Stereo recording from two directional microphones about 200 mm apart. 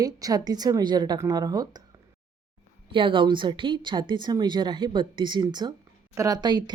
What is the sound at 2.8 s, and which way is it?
A woman's voice, 25° right (ahead or behind).